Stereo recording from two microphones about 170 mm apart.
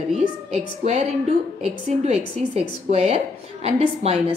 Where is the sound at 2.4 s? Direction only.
40° right (ahead or behind).